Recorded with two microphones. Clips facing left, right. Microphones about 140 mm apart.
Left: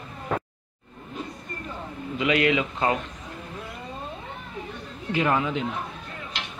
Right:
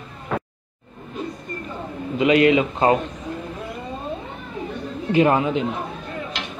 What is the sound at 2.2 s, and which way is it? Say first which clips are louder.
Speech: right 7 dB; 30° right (ahead or behind).